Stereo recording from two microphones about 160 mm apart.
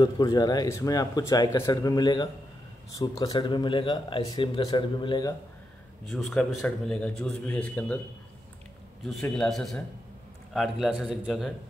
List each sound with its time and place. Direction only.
0.0 s speech: 25° left (ahead or behind)
6.0 s a man's voice: centre (ahead or behind)
9.0 s a man's voice: 5° left (ahead or behind)